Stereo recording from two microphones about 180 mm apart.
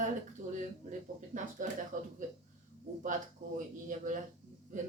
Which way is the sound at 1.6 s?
50° right (ahead or behind).